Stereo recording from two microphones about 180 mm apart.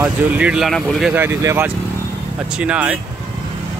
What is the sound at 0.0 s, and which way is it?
Speech, 5° right (ahead or behind).